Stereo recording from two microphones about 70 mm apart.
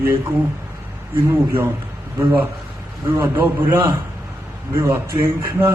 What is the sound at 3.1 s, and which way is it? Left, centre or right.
Speech, right.